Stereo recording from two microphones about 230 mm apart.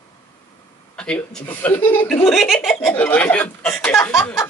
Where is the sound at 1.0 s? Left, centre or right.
Centre.